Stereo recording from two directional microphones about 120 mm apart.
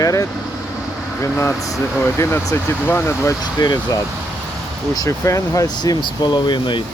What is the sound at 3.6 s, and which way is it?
Speech, 35° left (ahead or behind).